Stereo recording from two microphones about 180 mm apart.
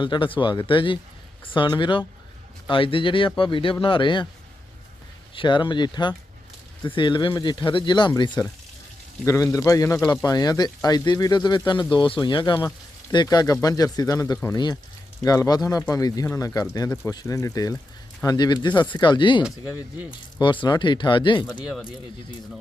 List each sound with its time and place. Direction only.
0.0 s speech: 25° left (ahead or behind)
5.3 s a man's voice: 25° left (ahead or behind)